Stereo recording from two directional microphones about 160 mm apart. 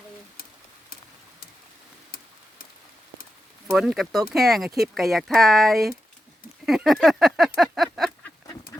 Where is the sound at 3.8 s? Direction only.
Centre (ahead or behind).